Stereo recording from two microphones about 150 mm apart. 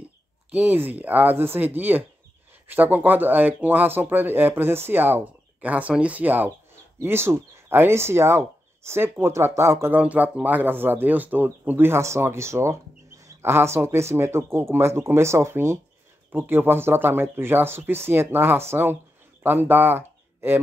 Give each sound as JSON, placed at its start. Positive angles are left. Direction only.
{"t": 0.5, "sound": "speech", "side_deg": -10}